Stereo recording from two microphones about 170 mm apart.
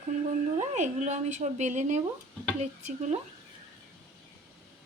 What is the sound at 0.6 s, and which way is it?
Speech, 45° right (ahead or behind).